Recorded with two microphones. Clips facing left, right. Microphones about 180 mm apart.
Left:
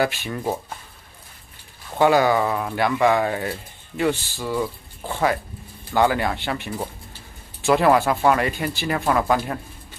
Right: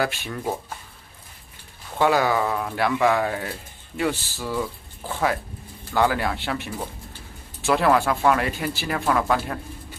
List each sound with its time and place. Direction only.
0.0 s speech: centre (ahead or behind)
2.0 s speech: centre (ahead or behind)